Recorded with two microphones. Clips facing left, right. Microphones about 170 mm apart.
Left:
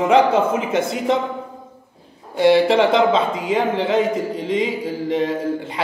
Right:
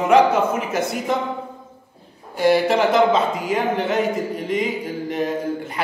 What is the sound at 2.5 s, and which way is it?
Speech, 25° left (ahead or behind).